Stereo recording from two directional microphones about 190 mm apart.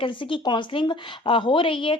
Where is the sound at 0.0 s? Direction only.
25° left (ahead or behind).